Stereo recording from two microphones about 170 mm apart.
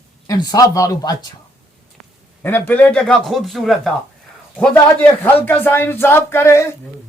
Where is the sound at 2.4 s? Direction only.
10° left (ahead or behind).